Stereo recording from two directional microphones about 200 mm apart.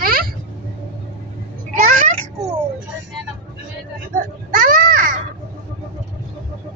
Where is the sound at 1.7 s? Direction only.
45° right (ahead or behind).